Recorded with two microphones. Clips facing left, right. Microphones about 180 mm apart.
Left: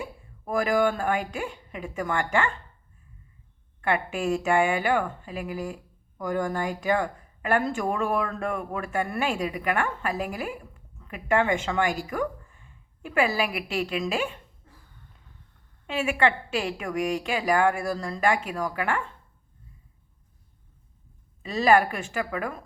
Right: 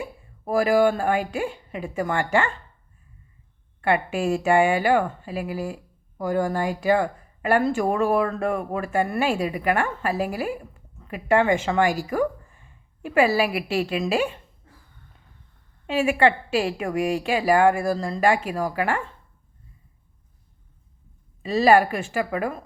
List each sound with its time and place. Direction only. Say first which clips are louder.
0.4 s a woman's voice: right 5 dB; 35° right (ahead or behind)
3.8 s a woman's voice: right 4 dB; 35° right (ahead or behind)
13.1 s a woman's voice: right 5 dB; 35° right (ahead or behind)
16.0 s a woman's voice: right 5 dB; 35° right (ahead or behind)
21.4 s a woman's voice: right 4 dB; 35° right (ahead or behind)